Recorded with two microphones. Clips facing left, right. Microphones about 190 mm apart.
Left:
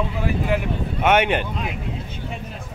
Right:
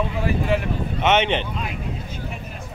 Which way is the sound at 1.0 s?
10° left (ahead or behind).